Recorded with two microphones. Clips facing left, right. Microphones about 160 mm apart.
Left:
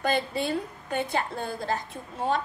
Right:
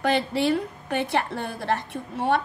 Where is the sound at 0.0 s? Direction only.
70° right (ahead or behind).